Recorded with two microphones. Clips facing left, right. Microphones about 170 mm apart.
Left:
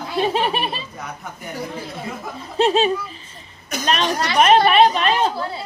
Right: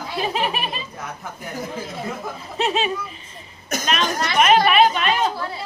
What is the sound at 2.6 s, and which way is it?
Speech, 35° left (ahead or behind).